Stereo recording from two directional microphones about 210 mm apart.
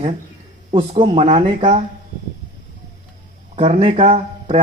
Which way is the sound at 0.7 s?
25° right (ahead or behind).